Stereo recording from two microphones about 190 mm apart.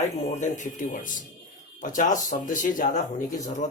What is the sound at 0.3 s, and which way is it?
Speech, 40° left (ahead or behind).